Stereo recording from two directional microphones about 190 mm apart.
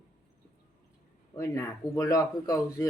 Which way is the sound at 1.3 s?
15° left (ahead or behind).